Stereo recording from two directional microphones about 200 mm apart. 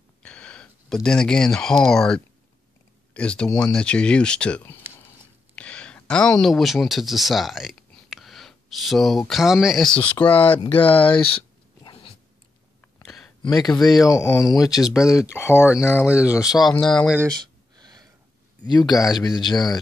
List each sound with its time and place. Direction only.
0.2 s speech: 5° left (ahead or behind)
11.8 s dog: 25° left (ahead or behind)
13.0 s a sound: centre (ahead or behind)
13.4 s speech: 20° left (ahead or behind)
16.1 s speech: 5° right (ahead or behind)
17.7 s a sound: 20° right (ahead or behind)
18.7 s speech: 20° left (ahead or behind)